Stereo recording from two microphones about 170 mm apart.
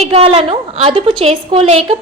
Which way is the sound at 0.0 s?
35° right (ahead or behind).